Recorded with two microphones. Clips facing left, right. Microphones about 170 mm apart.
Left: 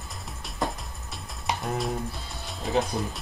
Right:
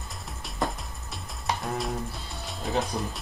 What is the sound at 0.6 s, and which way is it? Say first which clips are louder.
Music: even; centre (ahead or behind).